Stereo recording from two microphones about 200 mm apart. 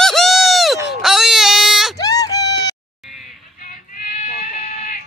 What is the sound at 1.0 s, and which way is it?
Baby cry, centre (ahead or behind).